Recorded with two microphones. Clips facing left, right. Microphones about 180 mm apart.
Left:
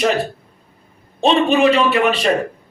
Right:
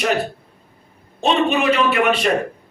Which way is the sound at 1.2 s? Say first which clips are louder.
Left 4 dB; 30° left (ahead or behind).